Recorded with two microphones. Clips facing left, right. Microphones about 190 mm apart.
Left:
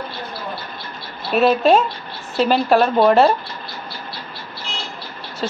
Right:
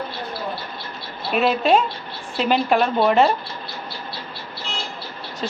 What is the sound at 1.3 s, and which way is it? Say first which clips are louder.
Speech: left 4 dB; 40° left (ahead or behind).